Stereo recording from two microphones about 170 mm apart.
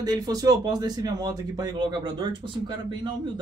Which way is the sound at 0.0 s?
20° right (ahead or behind).